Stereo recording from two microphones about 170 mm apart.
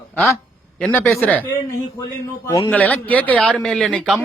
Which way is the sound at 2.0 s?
20° left (ahead or behind).